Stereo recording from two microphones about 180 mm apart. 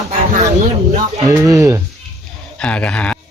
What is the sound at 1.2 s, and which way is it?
Speech, 15° right (ahead or behind).